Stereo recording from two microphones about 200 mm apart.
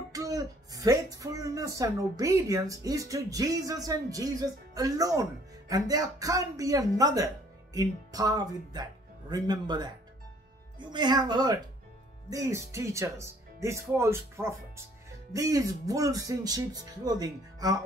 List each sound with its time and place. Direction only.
0.1 s speech: 15° right (ahead or behind)